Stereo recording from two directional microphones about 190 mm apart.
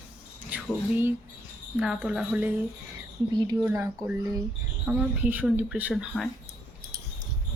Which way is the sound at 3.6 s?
15° right (ahead or behind).